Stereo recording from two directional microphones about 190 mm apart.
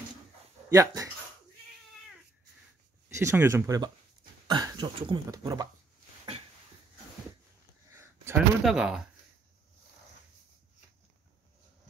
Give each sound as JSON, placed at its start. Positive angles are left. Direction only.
{"t": 0.7, "sound": "speech", "side_deg": -15}
{"t": 3.2, "sound": "speech", "side_deg": -15}
{"t": 7.9, "sound": "a sound", "side_deg": -15}
{"t": 8.6, "sound": "speech", "side_deg": -5}